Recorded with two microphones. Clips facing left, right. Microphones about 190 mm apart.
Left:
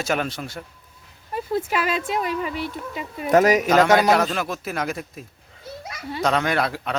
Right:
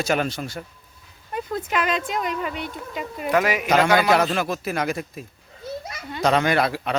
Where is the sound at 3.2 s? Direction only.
40° left (ahead or behind).